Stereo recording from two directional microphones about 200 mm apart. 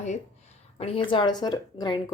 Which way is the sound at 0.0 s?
35° left (ahead or behind).